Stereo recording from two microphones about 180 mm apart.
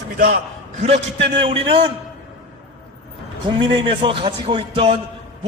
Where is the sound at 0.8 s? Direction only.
35° right (ahead or behind).